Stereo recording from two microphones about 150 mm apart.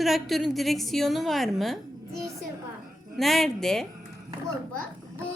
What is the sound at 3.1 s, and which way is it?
Speech, centre (ahead or behind).